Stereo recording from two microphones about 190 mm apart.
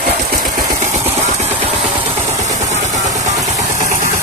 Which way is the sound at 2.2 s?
15° right (ahead or behind).